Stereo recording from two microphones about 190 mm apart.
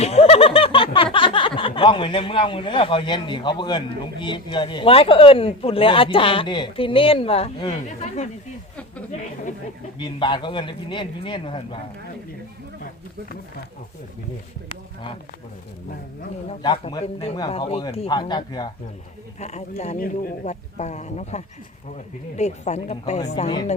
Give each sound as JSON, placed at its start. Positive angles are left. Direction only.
{"t": 0.0, "sound": "speech", "side_deg": 35}
{"t": 10.0, "sound": "a man's voice", "side_deg": 25}
{"t": 16.6, "sound": "a man's voice", "side_deg": 25}
{"t": 19.4, "sound": "speech", "side_deg": 35}